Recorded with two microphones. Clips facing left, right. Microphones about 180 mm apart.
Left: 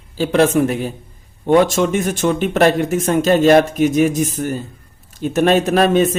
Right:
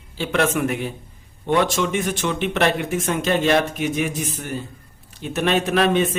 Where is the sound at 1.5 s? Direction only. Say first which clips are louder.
Left 6 dB; 45° left (ahead or behind).